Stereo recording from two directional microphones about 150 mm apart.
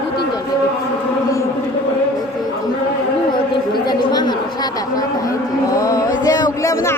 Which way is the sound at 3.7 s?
30° left (ahead or behind).